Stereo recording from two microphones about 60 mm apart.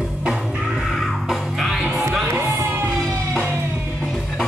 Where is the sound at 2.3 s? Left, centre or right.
Right.